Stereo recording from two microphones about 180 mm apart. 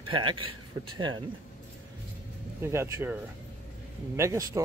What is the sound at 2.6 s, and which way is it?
Speech, 15° right (ahead or behind).